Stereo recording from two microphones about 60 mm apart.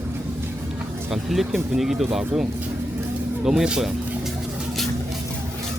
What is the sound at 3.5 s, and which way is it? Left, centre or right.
Speech, centre.